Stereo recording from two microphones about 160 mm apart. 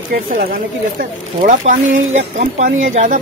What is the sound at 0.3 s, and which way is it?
Speech, 60° right (ahead or behind).